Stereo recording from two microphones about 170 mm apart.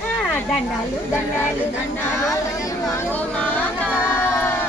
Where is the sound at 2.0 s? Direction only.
15° left (ahead or behind).